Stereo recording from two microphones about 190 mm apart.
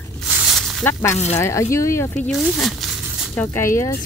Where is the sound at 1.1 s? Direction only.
35° left (ahead or behind).